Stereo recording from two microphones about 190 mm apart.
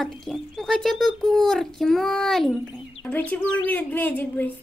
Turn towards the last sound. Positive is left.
turn(degrees=10)  # may be behind; listen again after turning